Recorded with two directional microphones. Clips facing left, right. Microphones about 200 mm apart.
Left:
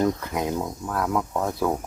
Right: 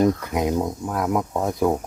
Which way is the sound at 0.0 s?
15° right (ahead or behind).